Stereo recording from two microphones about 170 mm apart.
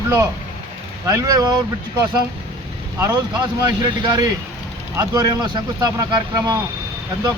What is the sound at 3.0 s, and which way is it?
Speech, 20° right (ahead or behind).